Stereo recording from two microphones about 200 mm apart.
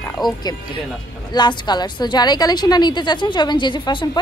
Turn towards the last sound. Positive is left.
turn(degrees=25)  # may be behind; listen again after turning